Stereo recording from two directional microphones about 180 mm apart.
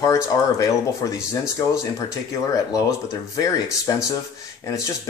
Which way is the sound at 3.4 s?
20° left (ahead or behind).